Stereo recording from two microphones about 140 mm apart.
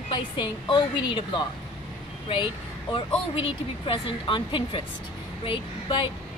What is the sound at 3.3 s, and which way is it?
A woman's voice, 40° left (ahead or behind).